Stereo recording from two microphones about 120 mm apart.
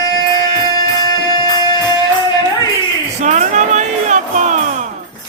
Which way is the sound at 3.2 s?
90° right.